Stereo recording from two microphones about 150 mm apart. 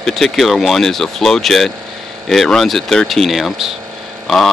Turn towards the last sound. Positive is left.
turn(degrees=0)  # may be behind; listen again after turning